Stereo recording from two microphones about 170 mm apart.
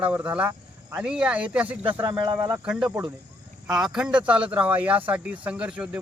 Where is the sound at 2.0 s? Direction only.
25° right (ahead or behind).